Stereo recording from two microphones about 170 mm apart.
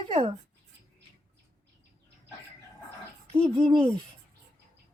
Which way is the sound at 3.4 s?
30° right (ahead or behind).